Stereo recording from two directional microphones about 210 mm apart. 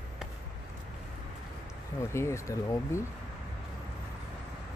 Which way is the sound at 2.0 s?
15° left (ahead or behind).